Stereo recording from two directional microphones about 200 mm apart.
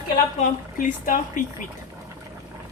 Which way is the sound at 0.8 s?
45° left (ahead or behind).